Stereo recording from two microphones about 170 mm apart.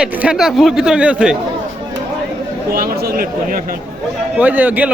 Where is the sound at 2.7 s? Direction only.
65° right (ahead or behind).